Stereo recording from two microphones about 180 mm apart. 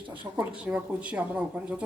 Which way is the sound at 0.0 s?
25° right (ahead or behind).